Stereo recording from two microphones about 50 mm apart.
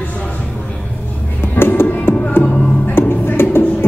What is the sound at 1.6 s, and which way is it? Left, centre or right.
Music, left.